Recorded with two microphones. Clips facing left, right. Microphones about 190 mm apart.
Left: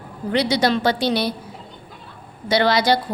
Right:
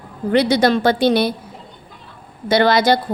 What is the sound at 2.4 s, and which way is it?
Speech, 50° right (ahead or behind).